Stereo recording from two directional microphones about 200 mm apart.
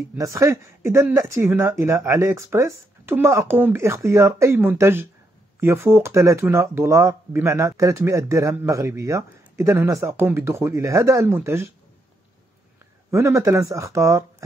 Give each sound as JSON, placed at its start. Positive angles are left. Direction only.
{"t": 0.1, "sound": "speech", "side_deg": -15}
{"t": 13.1, "sound": "speech", "side_deg": -15}